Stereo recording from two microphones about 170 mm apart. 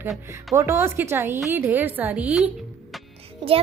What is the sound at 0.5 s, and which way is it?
Speech, 15° right (ahead or behind).